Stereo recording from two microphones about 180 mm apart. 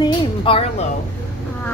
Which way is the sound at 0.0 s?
30° left (ahead or behind).